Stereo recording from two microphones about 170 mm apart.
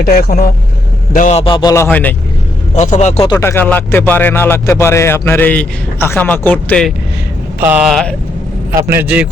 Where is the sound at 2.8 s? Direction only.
45° left (ahead or behind).